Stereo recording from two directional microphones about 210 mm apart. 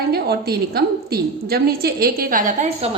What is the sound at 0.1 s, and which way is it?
A woman's voice, 50° right (ahead or behind).